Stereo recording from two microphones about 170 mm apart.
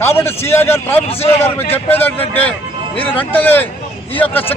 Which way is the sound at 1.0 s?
35° left (ahead or behind).